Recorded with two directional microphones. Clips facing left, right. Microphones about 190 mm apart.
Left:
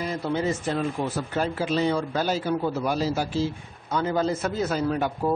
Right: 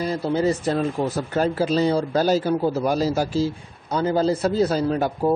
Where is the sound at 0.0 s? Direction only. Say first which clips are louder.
Right 5 dB; 35° right (ahead or behind).